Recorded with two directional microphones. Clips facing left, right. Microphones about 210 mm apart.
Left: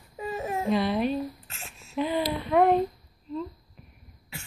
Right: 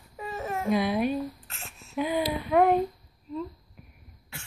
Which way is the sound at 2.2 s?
Centre (ahead or behind).